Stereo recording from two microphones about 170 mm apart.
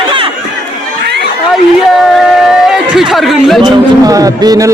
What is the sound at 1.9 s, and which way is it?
Chatter, centre (ahead or behind).